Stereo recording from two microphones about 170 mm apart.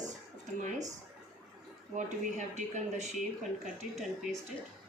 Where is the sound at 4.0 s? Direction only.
Centre (ahead or behind).